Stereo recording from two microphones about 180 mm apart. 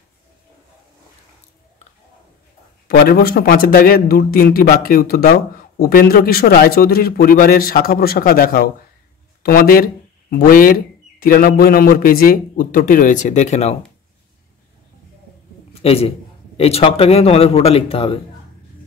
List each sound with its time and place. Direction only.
2.9 s a man's voice: 60° left (ahead or behind); by 13.7 s 40° left (ahead or behind)
15.8 s a man's voice: 35° left (ahead or behind)